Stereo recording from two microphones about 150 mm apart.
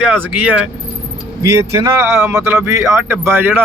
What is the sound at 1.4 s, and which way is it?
Speech, 20° right (ahead or behind).